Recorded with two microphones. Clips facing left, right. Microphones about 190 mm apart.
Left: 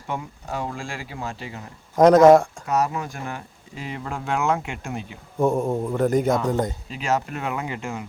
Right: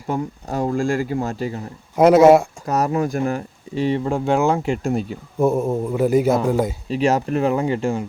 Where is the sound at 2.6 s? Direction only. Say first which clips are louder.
Right 4 dB; 35° right (ahead or behind).